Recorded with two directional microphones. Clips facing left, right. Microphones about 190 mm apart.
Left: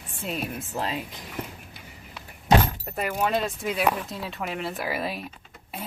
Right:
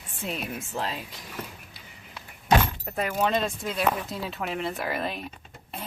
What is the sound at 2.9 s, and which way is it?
Speech, 5° left (ahead or behind).